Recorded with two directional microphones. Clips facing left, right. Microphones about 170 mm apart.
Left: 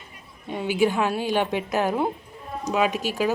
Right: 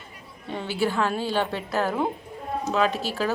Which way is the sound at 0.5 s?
15° left (ahead or behind).